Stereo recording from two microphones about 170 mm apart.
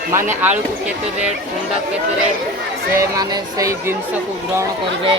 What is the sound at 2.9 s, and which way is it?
Speech, 20° right (ahead or behind).